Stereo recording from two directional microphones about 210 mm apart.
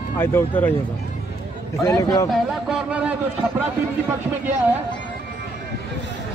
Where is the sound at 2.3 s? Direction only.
Centre (ahead or behind).